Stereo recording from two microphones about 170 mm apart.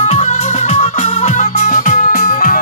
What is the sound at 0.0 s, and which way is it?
Music, 40° left (ahead or behind).